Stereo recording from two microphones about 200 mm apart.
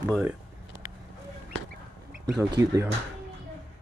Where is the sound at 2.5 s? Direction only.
15° right (ahead or behind).